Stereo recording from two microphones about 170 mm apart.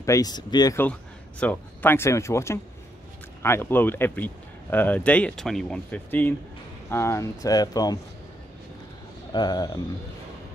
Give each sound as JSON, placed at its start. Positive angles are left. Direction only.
{"t": 0.0, "sound": "speech", "side_deg": 20}
{"t": 1.4, "sound": "speech", "side_deg": 10}
{"t": 9.3, "sound": "speech", "side_deg": 25}